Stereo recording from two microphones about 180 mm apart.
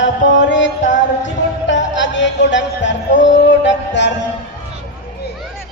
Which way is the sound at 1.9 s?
90° left.